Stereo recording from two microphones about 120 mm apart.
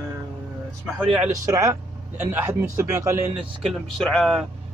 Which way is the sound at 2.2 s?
15° right (ahead or behind).